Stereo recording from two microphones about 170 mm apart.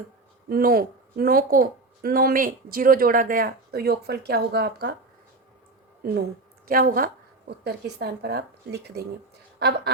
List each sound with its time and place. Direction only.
0.4 s a woman's voice: 60° right (ahead or behind)
6.7 s a woman's voice: 60° right (ahead or behind)